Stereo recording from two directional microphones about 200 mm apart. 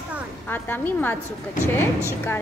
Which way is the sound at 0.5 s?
10° left (ahead or behind).